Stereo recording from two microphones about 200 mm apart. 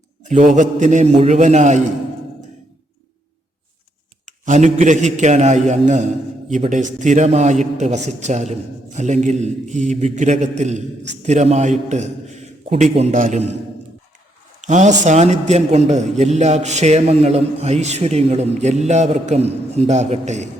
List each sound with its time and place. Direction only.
0.3 s speech: 35° right (ahead or behind)
4.3 s speech: 35° right (ahead or behind)
14.7 s speech: 35° right (ahead or behind)